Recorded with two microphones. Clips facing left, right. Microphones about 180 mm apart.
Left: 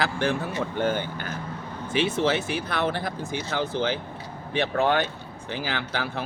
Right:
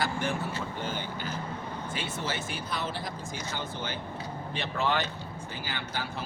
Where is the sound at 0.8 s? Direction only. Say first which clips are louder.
Left 8 dB; 55° left (ahead or behind).